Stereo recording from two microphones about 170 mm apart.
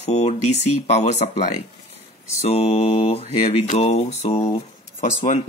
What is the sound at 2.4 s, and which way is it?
Speech, 40° left (ahead or behind).